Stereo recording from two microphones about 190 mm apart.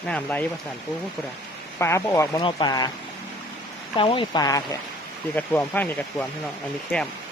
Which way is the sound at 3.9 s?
25° left (ahead or behind).